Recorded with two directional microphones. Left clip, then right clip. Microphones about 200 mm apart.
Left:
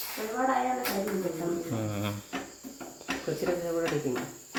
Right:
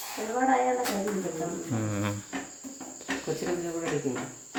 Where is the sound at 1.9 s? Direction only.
25° right (ahead or behind).